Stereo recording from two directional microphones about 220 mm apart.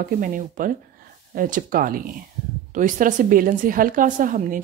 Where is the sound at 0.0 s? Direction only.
35° right (ahead or behind).